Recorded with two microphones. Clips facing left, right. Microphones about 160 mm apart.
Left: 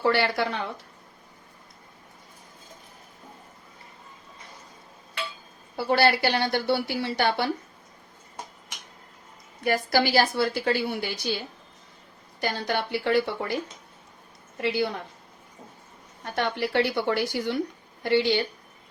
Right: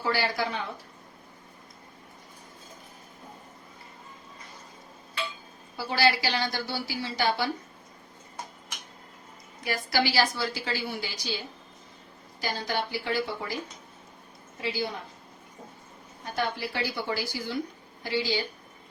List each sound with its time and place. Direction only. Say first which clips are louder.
0.0 s speech: left 5 dB; 65° left (ahead or behind)
5.7 s a woman's voice: left 4 dB; 60° left (ahead or behind)
9.6 s a woman's voice: left 5 dB; 50° left (ahead or behind)
12.4 s a woman's voice: left 3 dB; 60° left (ahead or behind)
14.6 s a woman's voice: left 6 dB; 65° left (ahead or behind)
16.2 s a woman's voice: left 3 dB; 65° left (ahead or behind)